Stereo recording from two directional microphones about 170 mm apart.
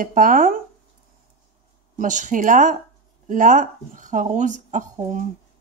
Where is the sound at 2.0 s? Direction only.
50° right (ahead or behind).